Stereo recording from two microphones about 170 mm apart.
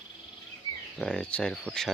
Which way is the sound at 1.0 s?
5° left (ahead or behind).